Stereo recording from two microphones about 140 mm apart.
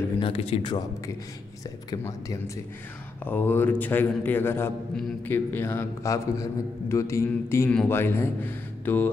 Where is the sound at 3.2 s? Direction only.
15° left (ahead or behind).